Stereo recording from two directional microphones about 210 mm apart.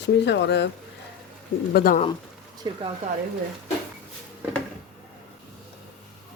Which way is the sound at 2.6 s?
20° right (ahead or behind).